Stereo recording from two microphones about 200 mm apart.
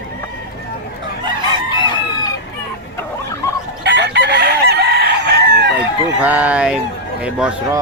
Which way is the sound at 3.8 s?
60° right (ahead or behind).